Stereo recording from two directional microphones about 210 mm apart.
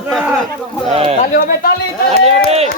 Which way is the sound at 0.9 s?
30° right (ahead or behind).